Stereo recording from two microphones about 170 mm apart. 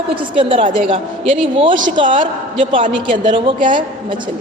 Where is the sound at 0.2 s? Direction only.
30° right (ahead or behind).